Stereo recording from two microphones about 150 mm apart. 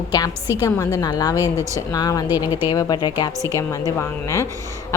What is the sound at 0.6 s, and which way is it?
A woman's voice, 20° left (ahead or behind).